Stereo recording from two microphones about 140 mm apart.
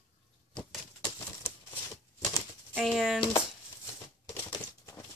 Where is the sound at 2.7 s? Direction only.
5° right (ahead or behind).